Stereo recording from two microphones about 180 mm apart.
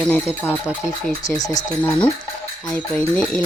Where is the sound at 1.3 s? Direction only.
20° left (ahead or behind).